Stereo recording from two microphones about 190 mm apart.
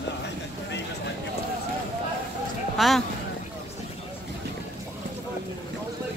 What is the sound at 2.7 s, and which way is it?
Speech, centre (ahead or behind).